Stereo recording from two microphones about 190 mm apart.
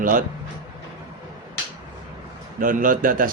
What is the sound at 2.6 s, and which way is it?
Speech, 45° right (ahead or behind).